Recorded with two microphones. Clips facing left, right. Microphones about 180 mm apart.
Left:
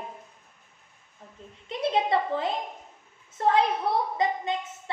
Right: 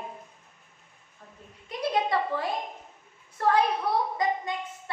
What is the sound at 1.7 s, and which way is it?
A woman's voice, 25° left (ahead or behind).